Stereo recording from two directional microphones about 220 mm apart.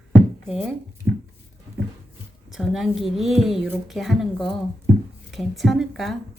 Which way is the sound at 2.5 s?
Centre (ahead or behind).